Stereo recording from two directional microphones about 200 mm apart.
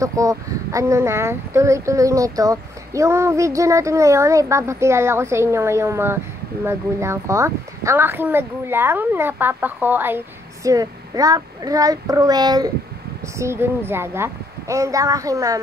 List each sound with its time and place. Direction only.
0.0 s speech: 15° right (ahead or behind)